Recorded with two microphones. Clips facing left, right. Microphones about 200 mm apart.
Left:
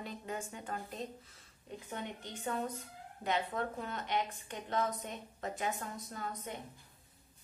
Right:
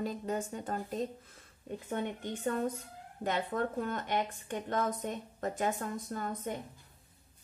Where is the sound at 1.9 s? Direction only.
50° right (ahead or behind).